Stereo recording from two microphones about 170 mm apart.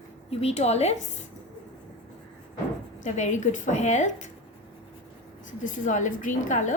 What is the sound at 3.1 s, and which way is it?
A woman's voice, 45° left (ahead or behind).